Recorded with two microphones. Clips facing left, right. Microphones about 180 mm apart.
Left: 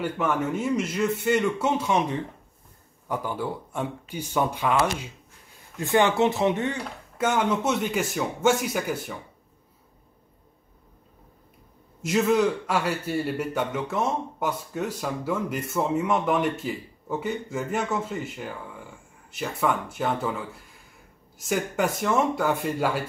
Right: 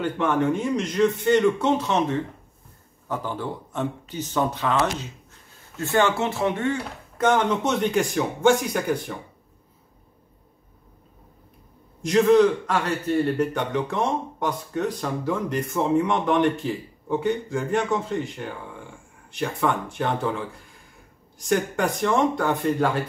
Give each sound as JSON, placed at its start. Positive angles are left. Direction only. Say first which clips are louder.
{"t": 0.0, "sound": "a man's voice", "louder": "right 3 dB", "side_deg": 5}
{"t": 7.2, "sound": "a man's voice", "louder": "right 3 dB", "side_deg": 5}
{"t": 12.0, "sound": "a man's voice", "louder": "right 5 dB", "side_deg": 5}